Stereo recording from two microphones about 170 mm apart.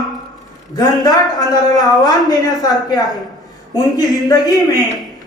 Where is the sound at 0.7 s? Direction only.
25° left (ahead or behind).